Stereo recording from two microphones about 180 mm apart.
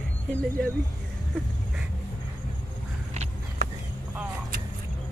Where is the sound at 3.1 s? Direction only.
40° right (ahead or behind).